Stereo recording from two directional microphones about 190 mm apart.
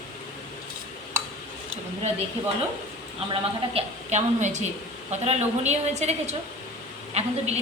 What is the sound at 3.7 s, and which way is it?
A woman's voice, 35° right (ahead or behind).